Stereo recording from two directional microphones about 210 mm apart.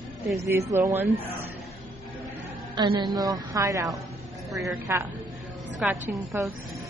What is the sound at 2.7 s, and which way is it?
A woman's voice, 20° right (ahead or behind).